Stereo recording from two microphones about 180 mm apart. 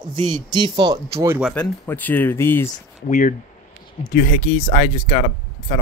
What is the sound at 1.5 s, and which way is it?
Speech, 10° left (ahead or behind).